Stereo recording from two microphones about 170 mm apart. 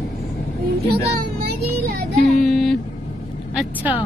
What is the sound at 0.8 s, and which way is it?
Speech, 70° right (ahead or behind).